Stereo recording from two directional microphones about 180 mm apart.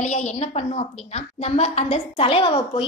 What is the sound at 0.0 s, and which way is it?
A woman's voice, 40° left (ahead or behind).